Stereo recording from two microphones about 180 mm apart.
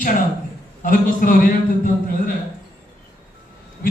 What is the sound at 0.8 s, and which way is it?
A man's voice, 50° left (ahead or behind).